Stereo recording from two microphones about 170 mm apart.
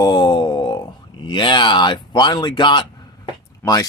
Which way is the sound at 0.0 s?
25° left (ahead or behind).